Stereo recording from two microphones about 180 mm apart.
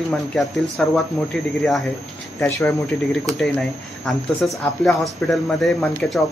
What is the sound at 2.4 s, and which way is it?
Speech, 15° left (ahead or behind).